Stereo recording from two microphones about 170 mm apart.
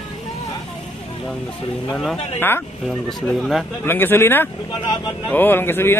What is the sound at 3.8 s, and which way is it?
A man's voice, 15° left (ahead or behind).